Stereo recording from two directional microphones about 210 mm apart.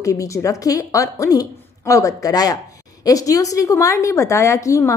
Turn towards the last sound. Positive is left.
turn(degrees=15)  # may be behind; listen again after turning